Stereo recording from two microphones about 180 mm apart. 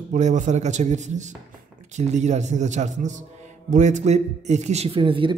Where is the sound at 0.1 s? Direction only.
40° right (ahead or behind).